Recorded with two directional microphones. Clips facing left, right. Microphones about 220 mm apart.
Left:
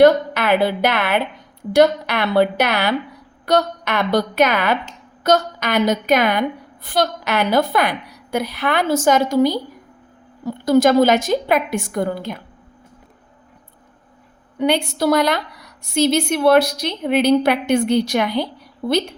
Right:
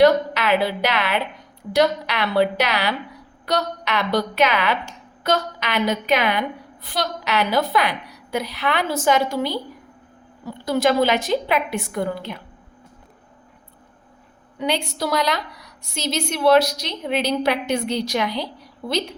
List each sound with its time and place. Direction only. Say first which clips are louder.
0.0 s a sound: left 3 dB; 50° left (ahead or behind)
1.7 s a woman's voice: left 5 dB; 50° left (ahead or behind)
14.6 s a woman's voice: left 6 dB; 55° left (ahead or behind)